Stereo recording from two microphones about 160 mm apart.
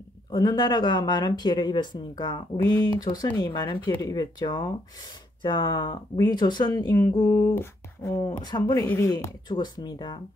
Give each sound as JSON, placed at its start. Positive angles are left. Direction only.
{"t": 0.3, "sound": "speech", "side_deg": 25}
{"t": 9.1, "sound": "speech", "side_deg": 25}